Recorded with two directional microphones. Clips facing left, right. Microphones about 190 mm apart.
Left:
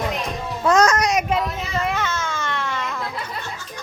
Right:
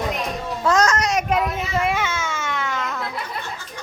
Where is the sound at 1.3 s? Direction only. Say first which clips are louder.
Right 1 dB; 10° right (ahead or behind).